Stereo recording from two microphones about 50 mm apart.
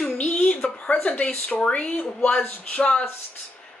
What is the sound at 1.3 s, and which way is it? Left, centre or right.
Speech, centre.